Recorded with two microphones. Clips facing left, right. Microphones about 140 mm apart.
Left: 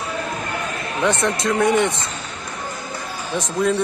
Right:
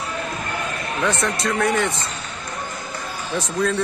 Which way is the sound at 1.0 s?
25° left (ahead or behind).